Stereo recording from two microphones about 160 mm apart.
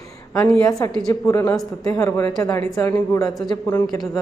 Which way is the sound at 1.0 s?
20° left (ahead or behind).